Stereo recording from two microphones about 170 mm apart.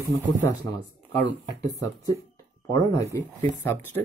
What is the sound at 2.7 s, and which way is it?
Speech, 20° left (ahead or behind).